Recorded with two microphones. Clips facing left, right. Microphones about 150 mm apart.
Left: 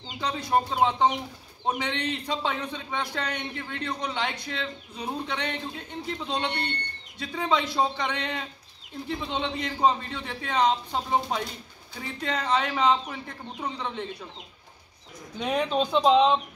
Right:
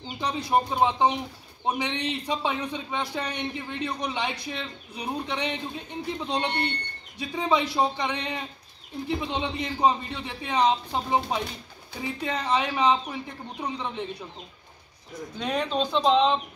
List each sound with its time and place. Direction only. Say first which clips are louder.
0.2 s a man's voice: right 1 dB; 15° right (ahead or behind)
15.3 s speech: left 2 dB; 5° left (ahead or behind)